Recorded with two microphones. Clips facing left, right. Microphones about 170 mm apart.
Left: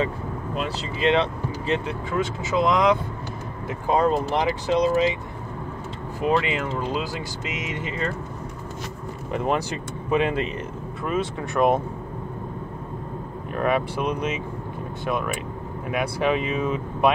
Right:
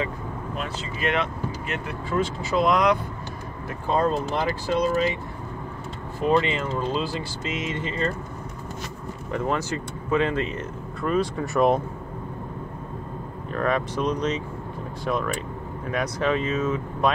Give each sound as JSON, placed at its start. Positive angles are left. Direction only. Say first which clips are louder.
{"t": 1.0, "sound": "speech", "louder": "left 5 dB", "side_deg": 30}
{"t": 6.2, "sound": "speech", "louder": "right 1 dB", "side_deg": 10}
{"t": 9.3, "sound": "speech", "louder": "left 1 dB", "side_deg": 15}
{"t": 11.0, "sound": "speech", "louder": "right 2 dB", "side_deg": 0}
{"t": 13.6, "sound": "speech", "louder": "left 1 dB", "side_deg": 10}